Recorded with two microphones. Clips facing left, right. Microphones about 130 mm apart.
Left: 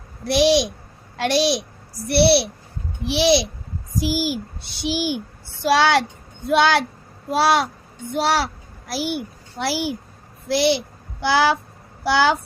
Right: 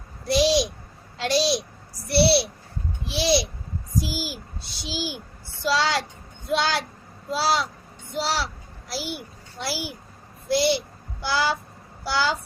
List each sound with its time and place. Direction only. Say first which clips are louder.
0.3 s a child's voice: left 4 dB; 70° left (ahead or behind)